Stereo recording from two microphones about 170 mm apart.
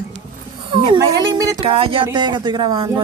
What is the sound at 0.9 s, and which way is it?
Speech, 25° right (ahead or behind).